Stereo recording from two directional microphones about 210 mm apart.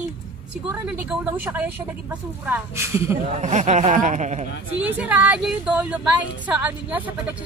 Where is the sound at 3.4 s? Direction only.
35° right (ahead or behind).